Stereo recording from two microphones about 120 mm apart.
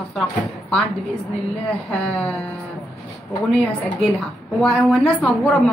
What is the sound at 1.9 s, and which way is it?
Speech, 5° left (ahead or behind).